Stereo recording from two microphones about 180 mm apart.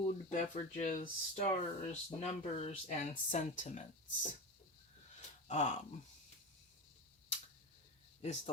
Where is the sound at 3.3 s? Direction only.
40° left (ahead or behind).